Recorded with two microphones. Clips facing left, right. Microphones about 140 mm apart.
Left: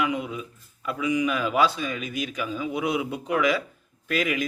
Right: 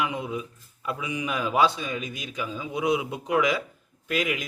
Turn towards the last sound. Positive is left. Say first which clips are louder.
# left 2 dB
turn(degrees=-20)  # may be behind; listen again after turning